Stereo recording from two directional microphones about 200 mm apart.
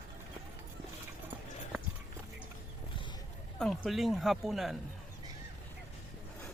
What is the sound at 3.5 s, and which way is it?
Speech, 5° left (ahead or behind).